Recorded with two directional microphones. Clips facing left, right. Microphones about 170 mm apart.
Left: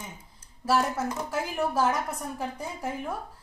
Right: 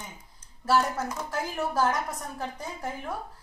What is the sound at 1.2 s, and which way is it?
Speech, 5° left (ahead or behind).